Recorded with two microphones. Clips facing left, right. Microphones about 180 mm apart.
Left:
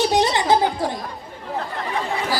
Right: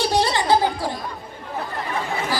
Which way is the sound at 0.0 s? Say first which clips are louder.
Left 2 dB; 20° left (ahead or behind).